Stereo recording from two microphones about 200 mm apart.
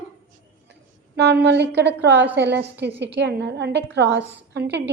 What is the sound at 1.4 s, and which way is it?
A woman's voice, 60° right (ahead or behind).